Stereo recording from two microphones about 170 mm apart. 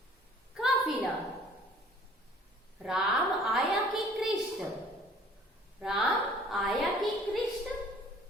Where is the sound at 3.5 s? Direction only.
Centre (ahead or behind).